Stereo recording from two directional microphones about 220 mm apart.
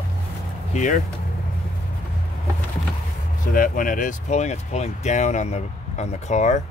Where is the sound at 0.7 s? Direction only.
35° left (ahead or behind).